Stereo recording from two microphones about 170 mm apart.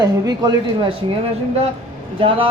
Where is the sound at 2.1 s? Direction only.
30° right (ahead or behind).